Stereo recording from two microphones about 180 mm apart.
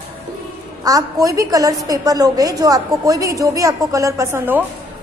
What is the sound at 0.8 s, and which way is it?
A woman's voice, 20° right (ahead or behind).